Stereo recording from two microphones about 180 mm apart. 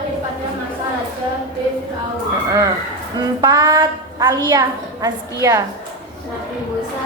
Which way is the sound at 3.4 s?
20° right (ahead or behind).